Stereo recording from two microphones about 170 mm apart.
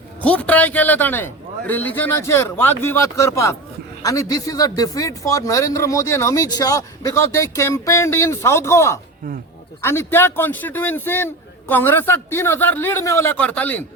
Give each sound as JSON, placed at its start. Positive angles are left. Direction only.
{"t": 0.2, "sound": "a man's voice", "side_deg": 10}